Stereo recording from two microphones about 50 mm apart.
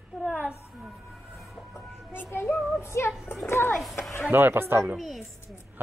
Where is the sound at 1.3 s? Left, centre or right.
Centre.